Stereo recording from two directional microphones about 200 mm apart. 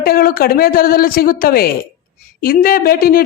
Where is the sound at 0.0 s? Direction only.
50° left (ahead or behind).